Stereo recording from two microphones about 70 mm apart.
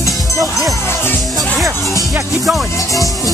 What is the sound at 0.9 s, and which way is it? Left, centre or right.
Music, left.